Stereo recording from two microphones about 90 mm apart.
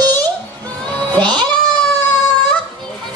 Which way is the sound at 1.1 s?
55° right (ahead or behind).